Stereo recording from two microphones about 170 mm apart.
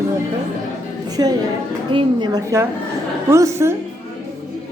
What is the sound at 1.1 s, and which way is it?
A woman's voice, 25° right (ahead or behind).